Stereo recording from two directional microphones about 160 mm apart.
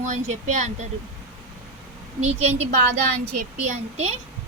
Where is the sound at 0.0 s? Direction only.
45° right (ahead or behind).